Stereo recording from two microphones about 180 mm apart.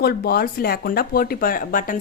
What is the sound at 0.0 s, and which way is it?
Speech, 60° left (ahead or behind).